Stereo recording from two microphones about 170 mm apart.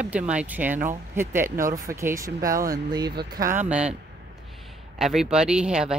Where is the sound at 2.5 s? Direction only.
55° right (ahead or behind).